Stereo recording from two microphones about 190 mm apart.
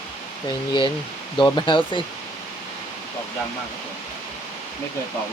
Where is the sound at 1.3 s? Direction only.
25° left (ahead or behind).